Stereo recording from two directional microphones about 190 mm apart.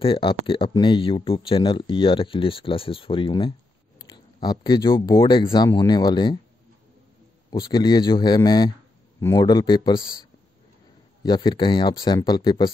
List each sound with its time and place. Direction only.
0.0 s speech: 30° left (ahead or behind)
7.5 s speech: 20° left (ahead or behind)
11.2 s speech: 25° left (ahead or behind)